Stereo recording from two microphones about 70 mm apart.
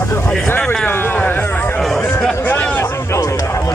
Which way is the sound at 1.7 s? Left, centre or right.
Centre.